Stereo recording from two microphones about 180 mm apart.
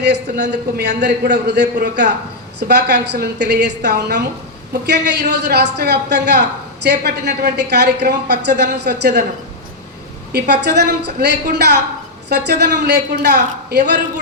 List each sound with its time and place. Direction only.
0.4 s a woman's voice: 65° right (ahead or behind)
10.3 s a woman's voice: 65° right (ahead or behind)